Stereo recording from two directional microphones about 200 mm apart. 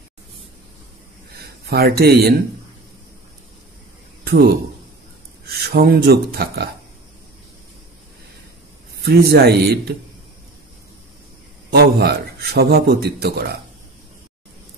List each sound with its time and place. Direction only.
1.3 s speech: 50° right (ahead or behind)
4.2 s a sound: 50° right (ahead or behind)
5.5 s a man's voice: 55° right (ahead or behind)
8.9 s a man's voice: 55° right (ahead or behind)
11.7 s a man's voice: 50° right (ahead or behind)